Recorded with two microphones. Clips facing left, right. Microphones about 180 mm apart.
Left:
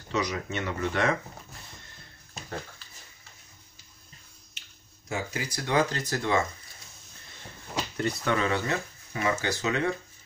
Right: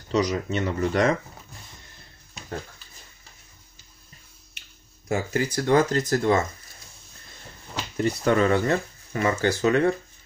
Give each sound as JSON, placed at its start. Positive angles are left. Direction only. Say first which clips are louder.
{"t": 0.1, "sound": "speech", "louder": "right 6 dB", "side_deg": -35}
{"t": 4.6, "sound": "speech", "louder": "right 2 dB", "side_deg": -55}
{"t": 8.2, "sound": "speech", "louder": "right 8 dB", "side_deg": -40}